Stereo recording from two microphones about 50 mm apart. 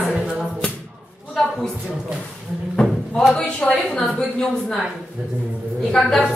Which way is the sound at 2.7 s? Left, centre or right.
Centre.